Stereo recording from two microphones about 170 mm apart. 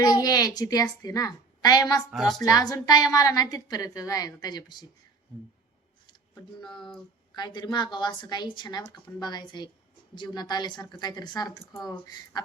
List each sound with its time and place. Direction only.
0.0 s a woman's voice: 20° left (ahead or behind)
2.0 s a woman's voice: centre (ahead or behind)
2.4 s a woman's voice: 20° left (ahead or behind)
6.6 s a woman's voice: 25° left (ahead or behind)